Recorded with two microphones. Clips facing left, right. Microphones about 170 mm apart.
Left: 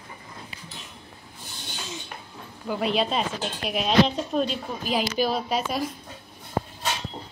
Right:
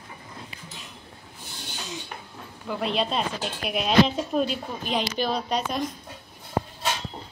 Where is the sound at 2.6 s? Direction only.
5° left (ahead or behind).